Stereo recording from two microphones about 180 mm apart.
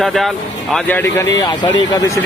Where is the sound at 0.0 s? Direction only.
Centre (ahead or behind).